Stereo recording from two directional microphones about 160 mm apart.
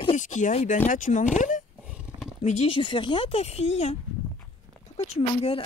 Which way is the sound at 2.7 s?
30° left (ahead or behind).